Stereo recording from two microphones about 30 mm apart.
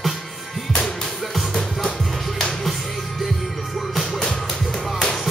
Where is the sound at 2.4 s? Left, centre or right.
Centre.